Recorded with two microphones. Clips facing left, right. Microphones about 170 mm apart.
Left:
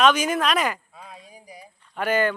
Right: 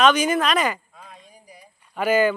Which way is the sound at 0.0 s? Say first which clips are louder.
Right 1 dB; centre (ahead or behind).